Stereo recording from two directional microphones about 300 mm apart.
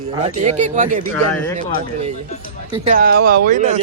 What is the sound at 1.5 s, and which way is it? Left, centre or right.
Speech, right.